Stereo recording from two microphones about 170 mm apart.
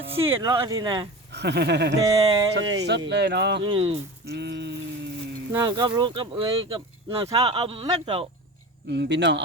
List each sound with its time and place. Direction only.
0.4 s speech: 20° right (ahead or behind)
1.3 s speech: 80° right
2.0 s speech: 25° right (ahead or behind)
2.8 s speech: 85° right
3.6 s speech: 30° right (ahead or behind)
4.3 s speech: 90° right
5.5 s speech: 20° right (ahead or behind)
7.4 s speech: 30° right (ahead or behind)
8.9 s speech: 85° right